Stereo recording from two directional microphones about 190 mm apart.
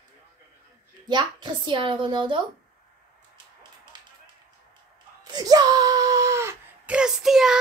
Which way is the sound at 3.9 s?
20° right (ahead or behind).